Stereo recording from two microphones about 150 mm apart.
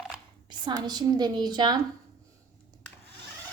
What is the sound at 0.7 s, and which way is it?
Speech, 25° right (ahead or behind).